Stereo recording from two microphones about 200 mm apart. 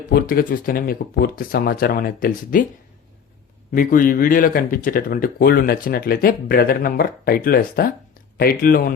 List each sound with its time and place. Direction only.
0.1 s speech: 45° left (ahead or behind)
3.7 s speech: 45° left (ahead or behind)